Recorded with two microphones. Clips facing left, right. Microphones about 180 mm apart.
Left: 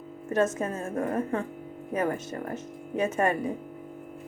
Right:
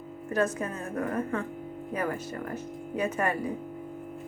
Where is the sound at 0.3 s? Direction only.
25° left (ahead or behind).